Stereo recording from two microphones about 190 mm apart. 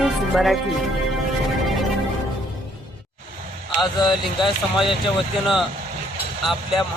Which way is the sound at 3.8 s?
25° left (ahead or behind).